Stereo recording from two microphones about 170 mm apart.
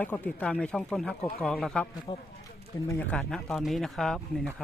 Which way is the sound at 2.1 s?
30° left (ahead or behind).